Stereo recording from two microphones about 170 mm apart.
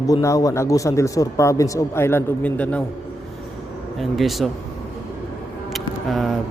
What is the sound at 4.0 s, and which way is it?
Speech, centre (ahead or behind).